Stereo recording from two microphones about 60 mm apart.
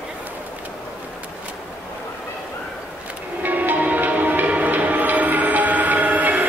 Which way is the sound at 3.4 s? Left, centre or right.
Right.